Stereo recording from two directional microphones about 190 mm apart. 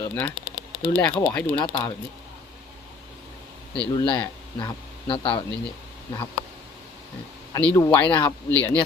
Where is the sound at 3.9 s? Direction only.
25° left (ahead or behind).